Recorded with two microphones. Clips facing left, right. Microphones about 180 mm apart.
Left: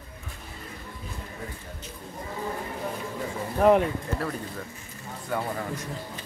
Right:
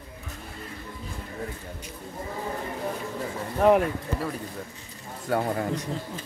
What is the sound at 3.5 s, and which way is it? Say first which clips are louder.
Speech: even; centre (ahead or behind).